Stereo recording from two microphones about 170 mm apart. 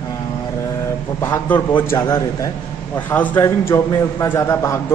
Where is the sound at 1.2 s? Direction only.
15° left (ahead or behind).